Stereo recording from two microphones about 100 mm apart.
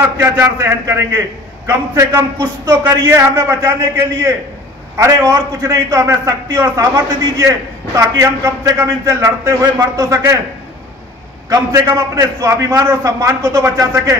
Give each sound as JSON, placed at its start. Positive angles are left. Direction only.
{"t": 0.2, "sound": "a man's voice", "side_deg": -25}
{"t": 11.4, "sound": "a man's voice", "side_deg": -30}